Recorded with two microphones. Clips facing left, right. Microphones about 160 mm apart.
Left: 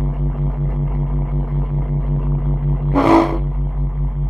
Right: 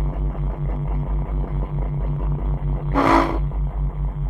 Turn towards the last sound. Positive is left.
turn(degrees=20)  # may be behind; listen again after turning